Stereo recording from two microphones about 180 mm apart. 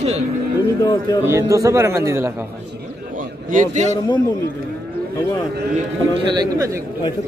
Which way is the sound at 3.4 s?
45° right (ahead or behind).